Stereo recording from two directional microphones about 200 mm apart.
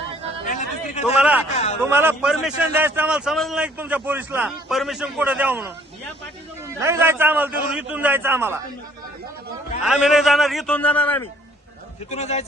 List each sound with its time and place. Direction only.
0.4 s a sound: 40° left (ahead or behind)
1.0 s a man's voice: 10° right (ahead or behind)
6.7 s a man's voice: 10° right (ahead or behind)
9.8 s a man's voice: 5° right (ahead or behind)
12.1 s a man's voice: 35° left (ahead or behind)